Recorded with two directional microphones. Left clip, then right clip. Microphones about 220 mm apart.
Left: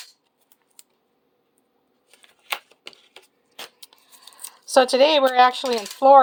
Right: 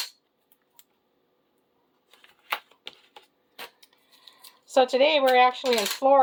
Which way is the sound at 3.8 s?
35° left (ahead or behind).